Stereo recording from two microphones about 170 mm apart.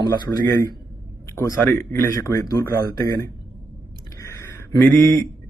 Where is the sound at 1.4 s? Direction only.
20° left (ahead or behind).